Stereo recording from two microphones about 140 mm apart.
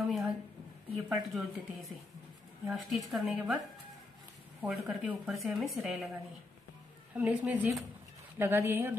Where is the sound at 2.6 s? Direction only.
Centre (ahead or behind).